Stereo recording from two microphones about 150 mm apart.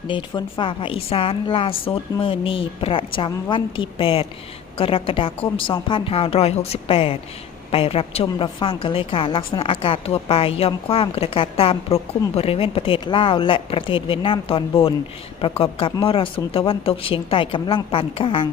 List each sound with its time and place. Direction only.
0.1 s a woman's voice: 35° left (ahead or behind)